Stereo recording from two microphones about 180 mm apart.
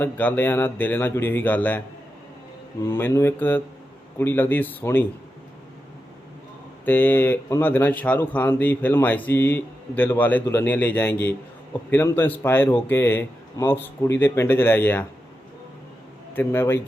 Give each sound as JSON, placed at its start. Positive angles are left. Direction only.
{"t": 0.0, "sound": "speech", "side_deg": 10}
{"t": 2.8, "sound": "speech", "side_deg": 15}
{"t": 6.8, "sound": "speech", "side_deg": 10}
{"t": 16.3, "sound": "speech", "side_deg": 10}